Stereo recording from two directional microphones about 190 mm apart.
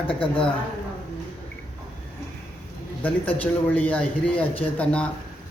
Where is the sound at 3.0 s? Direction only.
10° left (ahead or behind).